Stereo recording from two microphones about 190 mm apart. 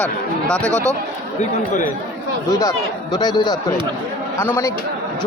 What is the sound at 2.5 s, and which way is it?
Speech, 20° left (ahead or behind).